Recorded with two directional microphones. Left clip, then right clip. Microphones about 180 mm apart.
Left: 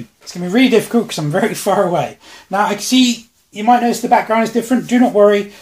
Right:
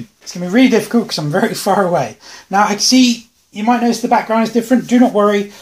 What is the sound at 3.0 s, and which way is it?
A woman's voice, 20° right (ahead or behind).